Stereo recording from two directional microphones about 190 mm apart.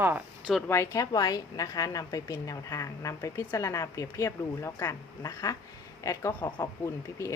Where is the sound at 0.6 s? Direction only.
15° left (ahead or behind).